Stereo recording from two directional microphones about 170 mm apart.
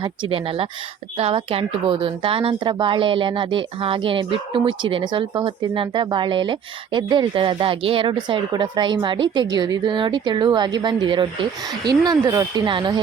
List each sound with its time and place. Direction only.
0.0 s a woman's voice: 30° right (ahead or behind)